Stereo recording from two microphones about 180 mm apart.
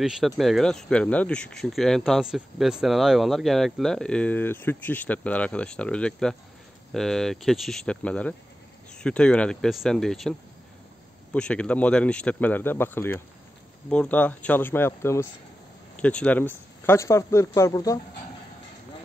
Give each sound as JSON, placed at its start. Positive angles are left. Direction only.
{"t": 0.0, "sound": "speech", "side_deg": 0}
{"t": 11.3, "sound": "speech", "side_deg": 5}